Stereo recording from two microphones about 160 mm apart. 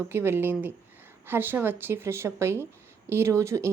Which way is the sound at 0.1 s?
15° right (ahead or behind).